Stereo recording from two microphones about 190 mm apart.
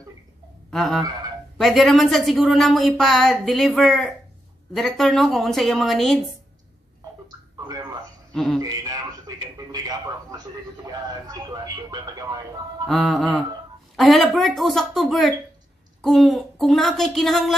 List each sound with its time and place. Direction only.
0.7 s fowl: centre (ahead or behind)
1.6 s speech: centre (ahead or behind)
7.2 s a sound: 20° right (ahead or behind)
8.3 s speech: centre (ahead or behind)
8.5 s a sound: 20° right (ahead or behind)
9.7 s a man's voice: 20° right (ahead or behind)
12.8 s speech: centre (ahead or behind)